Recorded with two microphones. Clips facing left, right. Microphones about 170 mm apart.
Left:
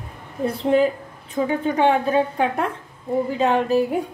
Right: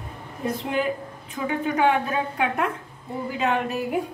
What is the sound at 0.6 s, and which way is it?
A woman's voice, 30° left (ahead or behind).